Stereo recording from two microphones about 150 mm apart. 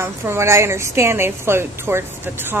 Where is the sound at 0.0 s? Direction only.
15° right (ahead or behind).